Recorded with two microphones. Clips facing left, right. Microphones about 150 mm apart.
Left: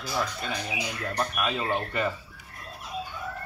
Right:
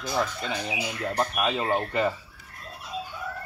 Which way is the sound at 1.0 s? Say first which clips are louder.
Right 3 dB; 25° right (ahead or behind).